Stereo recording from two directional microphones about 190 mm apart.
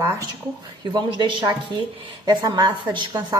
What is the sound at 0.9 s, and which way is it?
A woman's voice, 25° right (ahead or behind).